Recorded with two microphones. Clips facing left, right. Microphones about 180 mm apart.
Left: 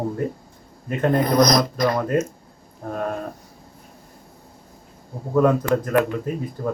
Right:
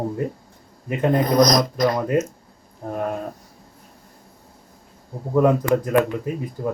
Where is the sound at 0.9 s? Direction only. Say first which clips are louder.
Even; 10° right (ahead or behind).